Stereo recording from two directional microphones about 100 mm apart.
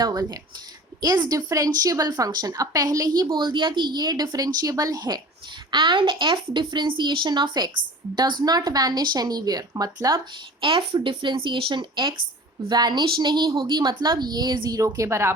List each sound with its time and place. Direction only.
0.0 s a woman's voice: 40° right (ahead or behind)
3.2 s speech: 50° right (ahead or behind)
5.7 s a woman's voice: 55° right (ahead or behind); by 10.2 s 40° right (ahead or behind)
10.6 s speech: 55° right (ahead or behind); by 15.3 s 30° right (ahead or behind)